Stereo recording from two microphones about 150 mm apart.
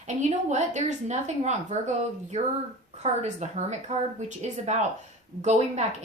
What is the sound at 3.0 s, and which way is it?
A woman's voice, 50° right (ahead or behind).